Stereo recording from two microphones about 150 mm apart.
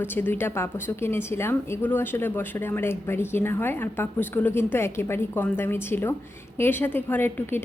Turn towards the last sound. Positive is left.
turn(degrees=15)  # may be behind; listen again after turning